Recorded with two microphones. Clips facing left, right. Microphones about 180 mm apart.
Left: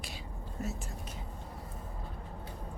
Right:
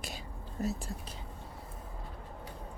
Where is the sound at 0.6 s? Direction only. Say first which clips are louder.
Right 7 dB; 35° right (ahead or behind).